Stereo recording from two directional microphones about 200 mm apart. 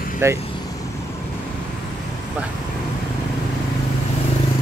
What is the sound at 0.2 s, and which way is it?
Speech, 15° right (ahead or behind).